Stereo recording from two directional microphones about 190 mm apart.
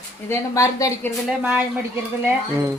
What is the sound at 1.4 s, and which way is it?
Speech, 5° right (ahead or behind).